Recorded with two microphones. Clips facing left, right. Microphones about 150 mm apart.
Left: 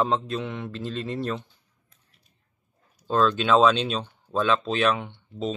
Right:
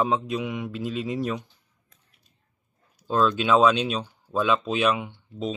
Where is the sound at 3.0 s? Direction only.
10° right (ahead or behind).